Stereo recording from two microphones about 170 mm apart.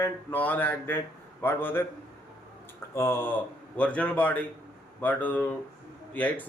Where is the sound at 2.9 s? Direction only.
15° left (ahead or behind).